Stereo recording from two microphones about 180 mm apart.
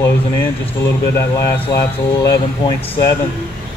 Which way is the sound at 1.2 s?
15° left (ahead or behind).